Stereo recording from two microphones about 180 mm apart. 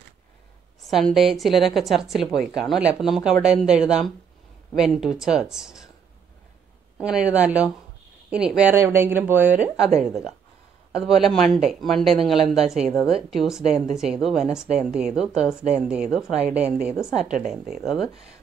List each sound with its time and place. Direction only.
0.8 s a woman's voice: centre (ahead or behind)
7.0 s a woman's voice: 5° right (ahead or behind)
16.3 s a woman's voice: 40° right (ahead or behind)
16.5 s a woman's voice: 5° right (ahead or behind)